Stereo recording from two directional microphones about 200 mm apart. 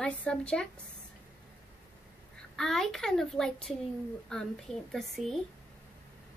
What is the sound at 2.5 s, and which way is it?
A child's voice, centre (ahead or behind).